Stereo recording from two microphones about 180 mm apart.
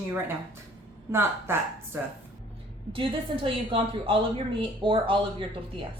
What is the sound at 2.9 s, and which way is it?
A woman's voice, 30° right (ahead or behind).